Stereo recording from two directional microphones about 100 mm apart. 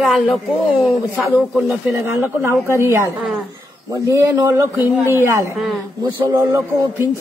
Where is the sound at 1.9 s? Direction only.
20° right (ahead or behind).